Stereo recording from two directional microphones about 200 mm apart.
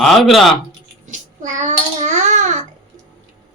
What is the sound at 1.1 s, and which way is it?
Child singing, 40° right (ahead or behind).